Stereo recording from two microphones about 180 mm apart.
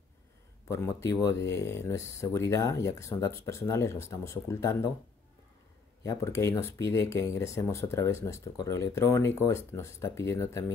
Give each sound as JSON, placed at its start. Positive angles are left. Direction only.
{"t": 0.7, "sound": "speech", "side_deg": 15}
{"t": 6.2, "sound": "speech", "side_deg": 15}